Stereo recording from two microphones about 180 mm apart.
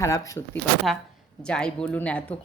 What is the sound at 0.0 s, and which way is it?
Speech, 15° left (ahead or behind).